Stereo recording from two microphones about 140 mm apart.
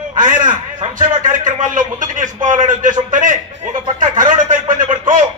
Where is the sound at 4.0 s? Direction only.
70° right (ahead or behind).